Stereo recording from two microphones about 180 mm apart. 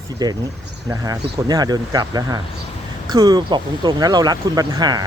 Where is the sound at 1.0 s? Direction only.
20° right (ahead or behind).